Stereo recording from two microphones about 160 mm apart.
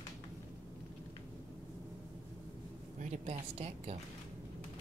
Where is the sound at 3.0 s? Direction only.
45° right (ahead or behind).